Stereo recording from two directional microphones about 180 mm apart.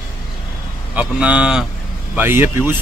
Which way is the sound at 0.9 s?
10° right (ahead or behind).